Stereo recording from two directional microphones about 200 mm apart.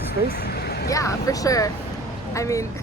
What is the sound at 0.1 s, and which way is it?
Vehicle, 50° left (ahead or behind).